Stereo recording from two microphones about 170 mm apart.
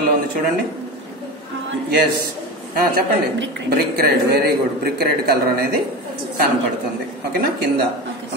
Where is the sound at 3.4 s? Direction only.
65° right (ahead or behind).